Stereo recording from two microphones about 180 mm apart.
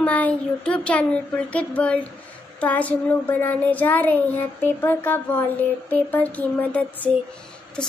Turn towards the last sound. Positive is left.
turn(degrees=5)  # may be behind; listen again after turning